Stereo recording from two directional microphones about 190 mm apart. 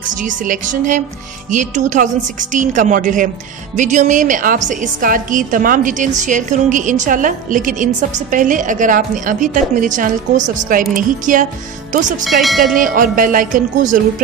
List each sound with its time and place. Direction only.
0.2 s a woman's voice: 40° right (ahead or behind)
12.3 s bell: centre (ahead or behind)
12.7 s a woman's voice: 45° right (ahead or behind)